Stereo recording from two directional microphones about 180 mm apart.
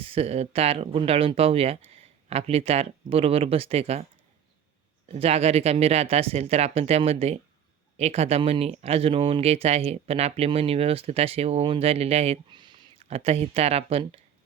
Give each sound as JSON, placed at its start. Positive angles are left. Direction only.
{"t": 0.0, "sound": "speech", "side_deg": -35}
{"t": 5.0, "sound": "speech", "side_deg": -35}